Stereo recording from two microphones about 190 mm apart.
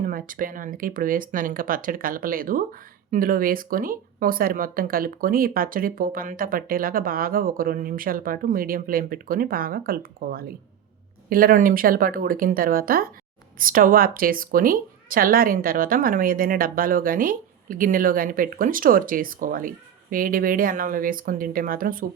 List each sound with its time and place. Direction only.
0.0 s a woman's voice: 45° right (ahead or behind)